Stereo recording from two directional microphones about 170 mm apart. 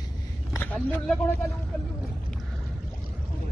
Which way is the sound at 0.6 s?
10° left (ahead or behind).